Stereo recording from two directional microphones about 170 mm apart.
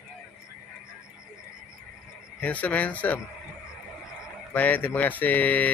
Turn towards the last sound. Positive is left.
turn(degrees=10)  # may be behind; listen again after turning